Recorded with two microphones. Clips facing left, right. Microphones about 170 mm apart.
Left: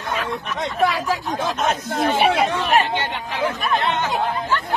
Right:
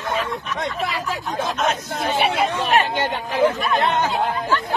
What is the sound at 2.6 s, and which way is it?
Speech, 40° right (ahead or behind).